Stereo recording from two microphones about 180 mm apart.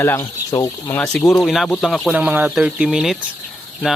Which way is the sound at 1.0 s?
5° left (ahead or behind).